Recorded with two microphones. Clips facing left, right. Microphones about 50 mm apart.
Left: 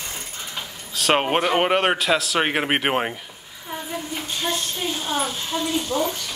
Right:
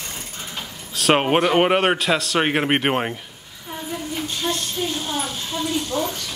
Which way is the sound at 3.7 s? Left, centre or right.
Centre.